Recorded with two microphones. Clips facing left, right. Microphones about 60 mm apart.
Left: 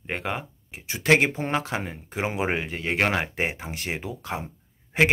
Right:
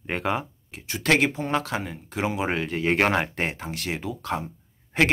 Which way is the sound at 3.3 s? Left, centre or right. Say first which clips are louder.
Even; centre.